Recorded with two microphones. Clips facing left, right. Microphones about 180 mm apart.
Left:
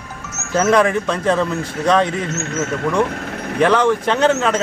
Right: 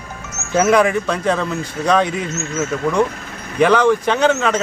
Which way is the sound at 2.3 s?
60° left (ahead or behind).